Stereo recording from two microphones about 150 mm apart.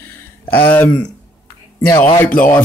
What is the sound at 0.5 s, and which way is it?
Speech, 10° left (ahead or behind).